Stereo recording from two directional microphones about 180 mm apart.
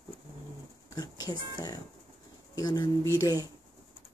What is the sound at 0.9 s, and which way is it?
Speech, 20° left (ahead or behind).